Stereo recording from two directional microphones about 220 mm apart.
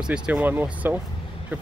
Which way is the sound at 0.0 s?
5° right (ahead or behind).